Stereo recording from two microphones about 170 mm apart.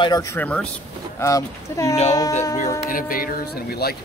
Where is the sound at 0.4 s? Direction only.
5° left (ahead or behind).